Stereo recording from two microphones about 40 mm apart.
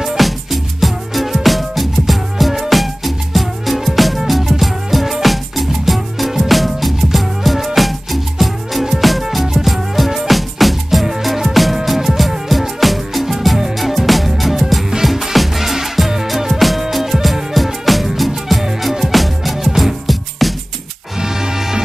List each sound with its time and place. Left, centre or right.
0.0 s music: centre
21.2 s music: centre